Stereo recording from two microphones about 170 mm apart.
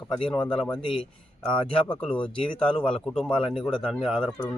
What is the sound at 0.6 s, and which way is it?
Speech, 5° left (ahead or behind).